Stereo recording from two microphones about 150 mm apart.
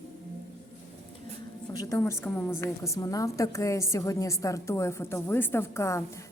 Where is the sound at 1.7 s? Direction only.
25° left (ahead or behind).